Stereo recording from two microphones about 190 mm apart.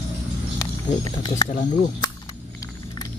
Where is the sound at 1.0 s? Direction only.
20° left (ahead or behind).